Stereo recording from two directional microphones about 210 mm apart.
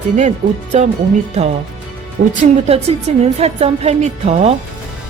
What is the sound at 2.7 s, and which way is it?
A woman's voice, 30° right (ahead or behind).